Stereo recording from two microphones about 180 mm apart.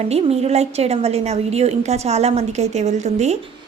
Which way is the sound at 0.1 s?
35° right (ahead or behind).